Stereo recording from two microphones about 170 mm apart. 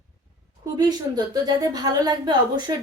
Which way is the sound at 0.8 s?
25° right (ahead or behind).